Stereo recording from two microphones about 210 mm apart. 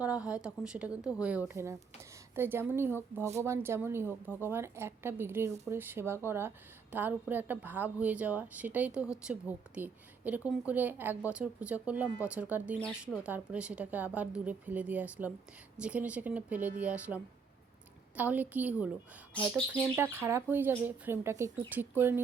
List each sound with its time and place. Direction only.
0.0 s a woman's voice: 5° right (ahead or behind)
18.2 s a woman's voice: 5° right (ahead or behind)
20.0 s a woman's voice: 10° right (ahead or behind)